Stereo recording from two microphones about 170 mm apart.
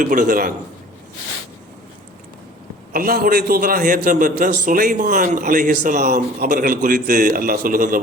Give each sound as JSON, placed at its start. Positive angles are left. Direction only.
{"t": 0.0, "sound": "a man's voice", "side_deg": -50}
{"t": 2.9, "sound": "a man's voice", "side_deg": -60}